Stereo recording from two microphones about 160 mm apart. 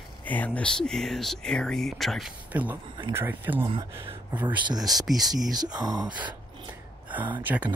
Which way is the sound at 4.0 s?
35° right (ahead or behind).